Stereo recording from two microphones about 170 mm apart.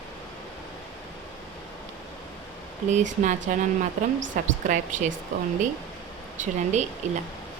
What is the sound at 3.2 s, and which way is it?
Speech, 45° right (ahead or behind).